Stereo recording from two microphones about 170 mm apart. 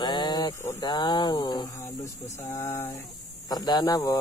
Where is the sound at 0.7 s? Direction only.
25° left (ahead or behind).